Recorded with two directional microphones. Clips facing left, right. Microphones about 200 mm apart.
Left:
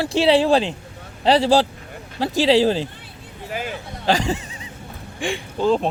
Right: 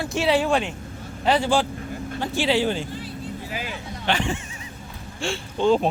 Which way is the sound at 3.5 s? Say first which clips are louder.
Left 7 dB; 50° left (ahead or behind).